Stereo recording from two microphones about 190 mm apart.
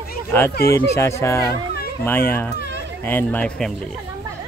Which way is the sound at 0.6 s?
15° left (ahead or behind).